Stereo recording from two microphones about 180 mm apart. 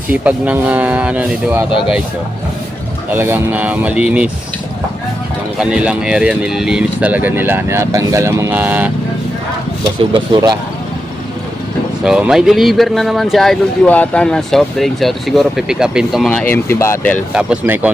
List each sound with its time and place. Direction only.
0.1 s speech: 10° right (ahead or behind)
3.1 s speech: 10° right (ahead or behind)
5.5 s speech: 5° right (ahead or behind)
10.1 s speech: 25° right (ahead or behind)
12.0 s speech: 5° right (ahead or behind)
17.3 s speech: 5° right (ahead or behind)